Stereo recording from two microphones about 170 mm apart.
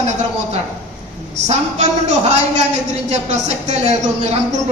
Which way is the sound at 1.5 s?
40° right (ahead or behind).